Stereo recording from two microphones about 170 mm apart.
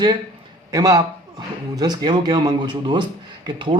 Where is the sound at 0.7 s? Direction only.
20° right (ahead or behind).